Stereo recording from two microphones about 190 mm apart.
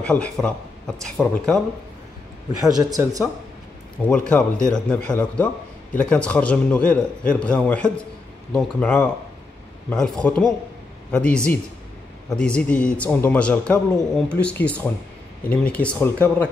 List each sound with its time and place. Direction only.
0.0 s a man's voice: 5° left (ahead or behind)
2.8 s speech: 20° right (ahead or behind)
4.1 s a man's voice: 5° left (ahead or behind)